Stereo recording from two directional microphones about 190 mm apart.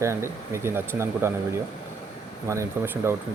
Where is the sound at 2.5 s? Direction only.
15° right (ahead or behind).